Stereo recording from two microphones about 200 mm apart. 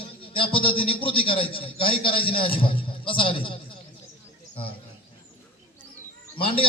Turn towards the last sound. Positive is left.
turn(degrees=25)  # may be behind; listen again after turning